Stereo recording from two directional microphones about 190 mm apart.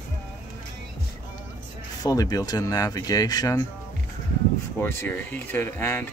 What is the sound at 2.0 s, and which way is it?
Speech, 20° left (ahead or behind).